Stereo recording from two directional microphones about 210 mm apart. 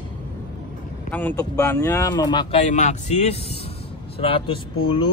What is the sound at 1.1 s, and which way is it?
Speech, 10° left (ahead or behind).